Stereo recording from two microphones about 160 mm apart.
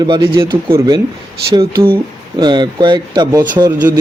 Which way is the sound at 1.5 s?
35° right (ahead or behind).